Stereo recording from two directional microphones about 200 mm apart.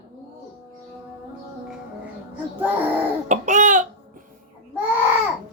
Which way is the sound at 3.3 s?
35° right (ahead or behind).